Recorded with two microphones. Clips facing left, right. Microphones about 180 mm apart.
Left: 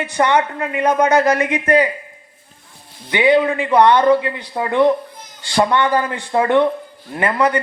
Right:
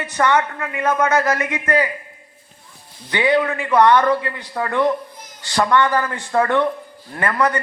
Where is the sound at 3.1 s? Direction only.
20° left (ahead or behind).